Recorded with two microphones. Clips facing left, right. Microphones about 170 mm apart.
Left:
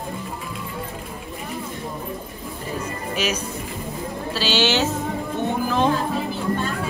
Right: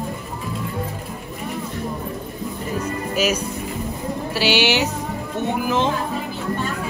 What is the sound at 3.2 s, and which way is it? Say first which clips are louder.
Speech: right 4 dB; 10° right (ahead or behind).